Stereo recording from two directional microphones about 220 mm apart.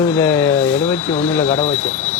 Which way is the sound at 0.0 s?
10° left (ahead or behind).